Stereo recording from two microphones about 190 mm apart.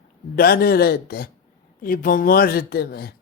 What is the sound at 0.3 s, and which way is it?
A man's voice, 55° left (ahead or behind).